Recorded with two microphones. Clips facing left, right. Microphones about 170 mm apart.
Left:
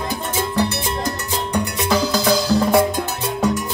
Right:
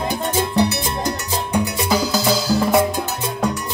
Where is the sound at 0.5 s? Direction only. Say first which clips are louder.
Right 2 dB; 10° right (ahead or behind).